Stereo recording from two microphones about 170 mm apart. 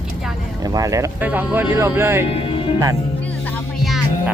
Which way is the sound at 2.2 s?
35° left (ahead or behind).